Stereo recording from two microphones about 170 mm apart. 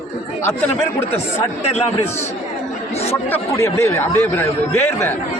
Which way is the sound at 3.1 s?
15° left (ahead or behind).